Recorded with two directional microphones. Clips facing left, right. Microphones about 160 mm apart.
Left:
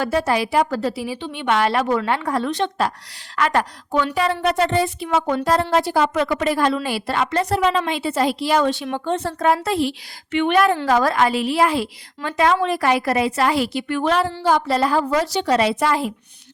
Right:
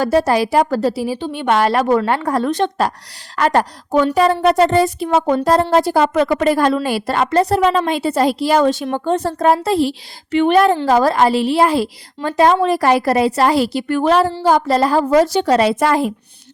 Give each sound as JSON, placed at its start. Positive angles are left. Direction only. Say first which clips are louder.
{"t": 0.0, "sound": "a woman's voice", "louder": "right 5 dB", "side_deg": -40}